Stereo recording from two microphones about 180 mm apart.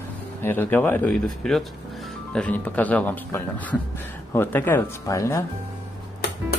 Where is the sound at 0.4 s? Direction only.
10° left (ahead or behind).